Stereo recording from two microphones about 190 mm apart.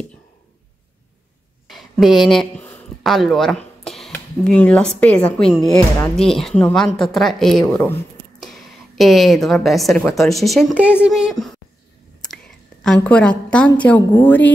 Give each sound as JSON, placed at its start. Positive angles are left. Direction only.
{"t": 1.7, "sound": "a woman's voice", "side_deg": 0}
{"t": 12.8, "sound": "a woman's voice", "side_deg": 5}